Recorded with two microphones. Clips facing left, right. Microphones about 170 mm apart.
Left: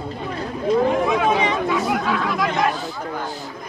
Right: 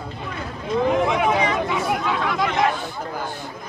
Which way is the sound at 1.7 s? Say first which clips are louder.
Left 2 dB; 25° right (ahead or behind).